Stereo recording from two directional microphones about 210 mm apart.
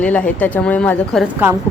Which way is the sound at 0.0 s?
5° left (ahead or behind).